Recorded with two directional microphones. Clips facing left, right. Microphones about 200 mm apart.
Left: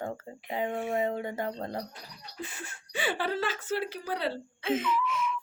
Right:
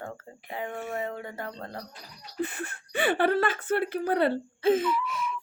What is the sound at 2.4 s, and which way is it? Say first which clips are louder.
A woman's voice: right 8 dB; 60° right (ahead or behind).